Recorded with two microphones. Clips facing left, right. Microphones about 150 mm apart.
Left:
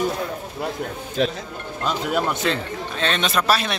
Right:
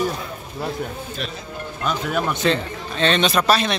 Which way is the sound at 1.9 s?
20° left (ahead or behind).